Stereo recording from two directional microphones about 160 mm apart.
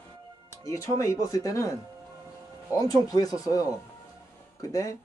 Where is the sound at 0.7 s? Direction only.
20° left (ahead or behind).